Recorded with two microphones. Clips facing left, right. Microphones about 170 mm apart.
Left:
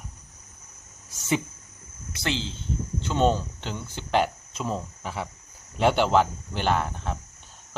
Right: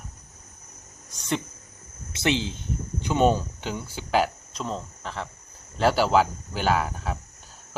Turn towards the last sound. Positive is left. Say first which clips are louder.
# right 1 dB
turn(degrees=-5)  # may be behind; listen again after turning